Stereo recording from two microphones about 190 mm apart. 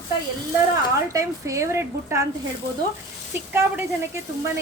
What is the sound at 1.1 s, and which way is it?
A woman's voice, 15° right (ahead or behind).